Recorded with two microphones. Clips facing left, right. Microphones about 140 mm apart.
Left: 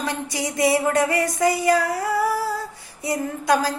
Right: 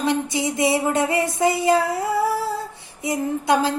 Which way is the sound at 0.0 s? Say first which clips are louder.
Right 5 dB; 20° right (ahead or behind).